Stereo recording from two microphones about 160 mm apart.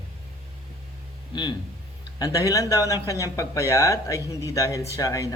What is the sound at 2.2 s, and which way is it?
A man's voice, 20° left (ahead or behind).